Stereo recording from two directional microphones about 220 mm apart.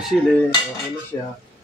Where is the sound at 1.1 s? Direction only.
5° left (ahead or behind).